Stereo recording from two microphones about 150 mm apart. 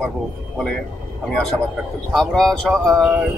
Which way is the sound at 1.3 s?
Centre (ahead or behind).